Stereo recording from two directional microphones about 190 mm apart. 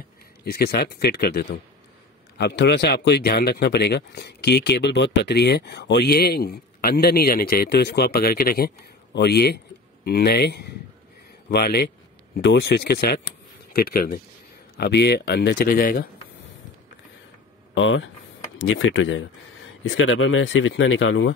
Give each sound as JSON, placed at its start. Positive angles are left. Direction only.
{"t": 0.5, "sound": "speech", "side_deg": 55}
{"t": 17.7, "sound": "speech", "side_deg": 80}